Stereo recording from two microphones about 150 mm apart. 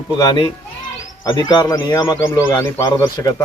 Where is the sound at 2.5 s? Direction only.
15° left (ahead or behind).